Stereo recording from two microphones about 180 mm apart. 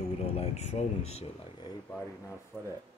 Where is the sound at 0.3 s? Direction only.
35° left (ahead or behind).